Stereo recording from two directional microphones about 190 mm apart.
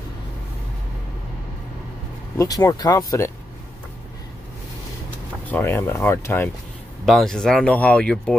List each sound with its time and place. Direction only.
2.3 s speech: 20° left (ahead or behind)
5.5 s speech: 10° left (ahead or behind)